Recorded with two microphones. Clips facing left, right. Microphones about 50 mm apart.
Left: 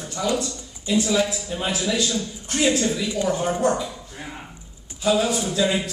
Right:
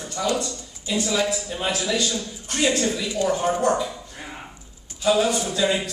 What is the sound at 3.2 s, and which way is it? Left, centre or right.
A man's voice, centre.